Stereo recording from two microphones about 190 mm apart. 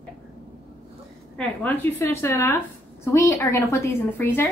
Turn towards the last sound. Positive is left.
turn(degrees=10)  # may be behind; listen again after turning